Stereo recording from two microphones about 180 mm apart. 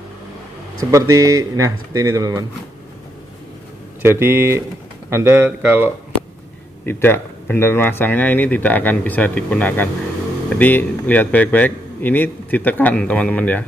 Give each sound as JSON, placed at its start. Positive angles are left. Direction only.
{"t": 0.7, "sound": "speech", "side_deg": -15}
{"t": 4.0, "sound": "a man's voice", "side_deg": -10}
{"t": 6.9, "sound": "a man's voice", "side_deg": 10}